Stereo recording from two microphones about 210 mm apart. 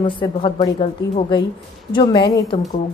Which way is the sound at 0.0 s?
25° left (ahead or behind).